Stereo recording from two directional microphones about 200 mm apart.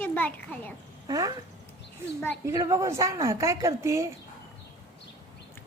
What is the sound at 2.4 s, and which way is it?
A woman's voice, 15° right (ahead or behind).